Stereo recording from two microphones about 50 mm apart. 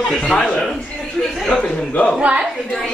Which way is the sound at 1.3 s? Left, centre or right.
Centre.